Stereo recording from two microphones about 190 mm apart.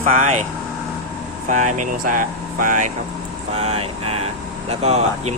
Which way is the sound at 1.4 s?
40° right (ahead or behind).